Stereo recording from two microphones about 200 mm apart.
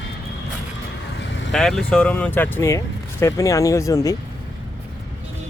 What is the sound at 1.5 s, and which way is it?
Speech, 5° left (ahead or behind).